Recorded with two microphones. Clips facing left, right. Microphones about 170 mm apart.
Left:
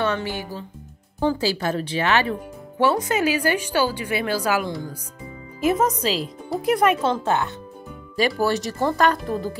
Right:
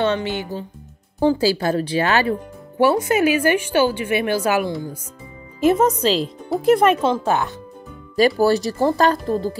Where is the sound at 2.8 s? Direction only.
25° right (ahead or behind).